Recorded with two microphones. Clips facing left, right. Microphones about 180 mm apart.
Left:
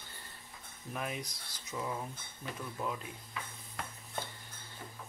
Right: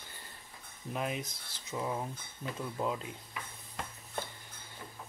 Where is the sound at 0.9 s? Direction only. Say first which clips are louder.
Right 3 dB; 20° right (ahead or behind).